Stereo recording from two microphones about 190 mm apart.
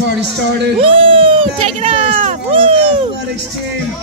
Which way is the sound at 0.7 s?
30° right (ahead or behind).